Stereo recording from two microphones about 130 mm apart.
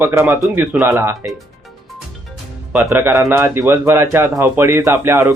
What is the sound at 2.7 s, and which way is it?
A man's voice, 15° right (ahead or behind).